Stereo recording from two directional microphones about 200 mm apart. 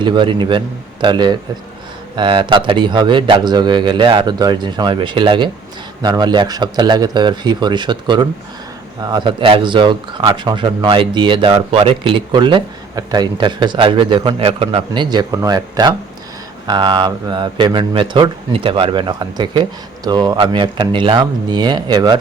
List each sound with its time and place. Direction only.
0.0 s speech: 25° right (ahead or behind)